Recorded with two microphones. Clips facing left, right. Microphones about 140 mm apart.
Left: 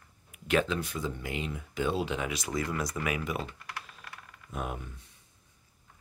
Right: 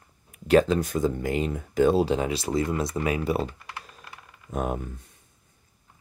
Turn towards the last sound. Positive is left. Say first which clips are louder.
# right 8 dB
turn(degrees=-45)  # may be behind; listen again after turning